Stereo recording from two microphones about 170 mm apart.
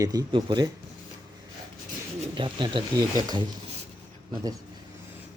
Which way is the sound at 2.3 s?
30° right (ahead or behind).